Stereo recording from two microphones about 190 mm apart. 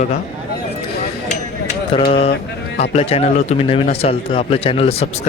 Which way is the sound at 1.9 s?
30° left (ahead or behind).